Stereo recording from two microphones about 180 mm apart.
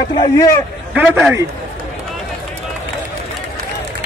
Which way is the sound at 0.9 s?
10° right (ahead or behind).